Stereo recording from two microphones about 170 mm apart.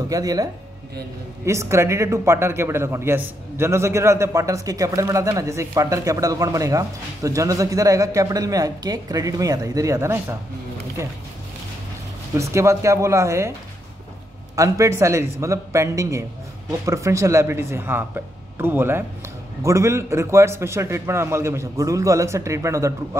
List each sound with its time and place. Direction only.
0.1 s a man's voice: 20° right (ahead or behind)
12.4 s a man's voice: 15° right (ahead or behind)
14.5 s a man's voice: 20° right (ahead or behind)